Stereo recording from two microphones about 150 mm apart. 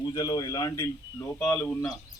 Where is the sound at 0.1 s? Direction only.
25° left (ahead or behind).